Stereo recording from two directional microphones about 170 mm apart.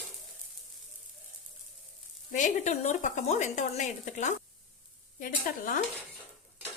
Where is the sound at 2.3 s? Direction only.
45° left (ahead or behind).